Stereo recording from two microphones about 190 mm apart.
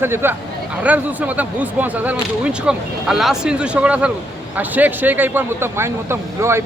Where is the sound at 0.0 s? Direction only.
10° right (ahead or behind).